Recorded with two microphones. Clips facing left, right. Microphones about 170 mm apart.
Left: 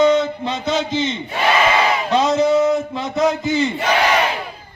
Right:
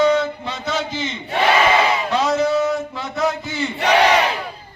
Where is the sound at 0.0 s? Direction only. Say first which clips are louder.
Left 2 dB; 20° left (ahead or behind).